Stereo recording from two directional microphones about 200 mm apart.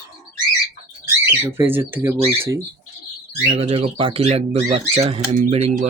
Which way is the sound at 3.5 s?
30° right (ahead or behind).